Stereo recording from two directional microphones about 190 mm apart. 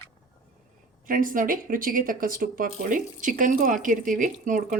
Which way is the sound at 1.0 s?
45° right (ahead or behind).